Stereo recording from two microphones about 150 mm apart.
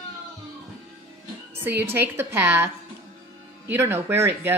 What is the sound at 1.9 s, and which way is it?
Speech, 15° right (ahead or behind).